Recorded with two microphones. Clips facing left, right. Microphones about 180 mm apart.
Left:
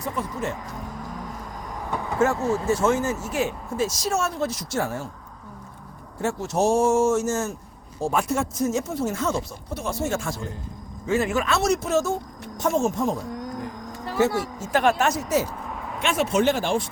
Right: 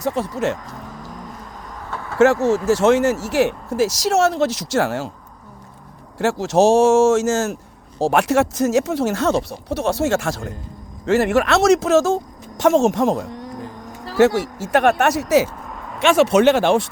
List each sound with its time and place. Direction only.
0.0 s speech: 80° right
1.9 s vehicle: 15° left (ahead or behind)
2.1 s speech: 85° right
6.1 s speech: 85° right